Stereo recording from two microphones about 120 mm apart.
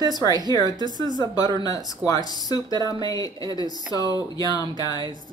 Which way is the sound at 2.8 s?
35° right (ahead or behind).